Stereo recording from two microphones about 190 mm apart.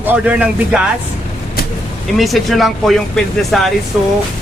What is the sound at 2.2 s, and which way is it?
Speech, centre (ahead or behind).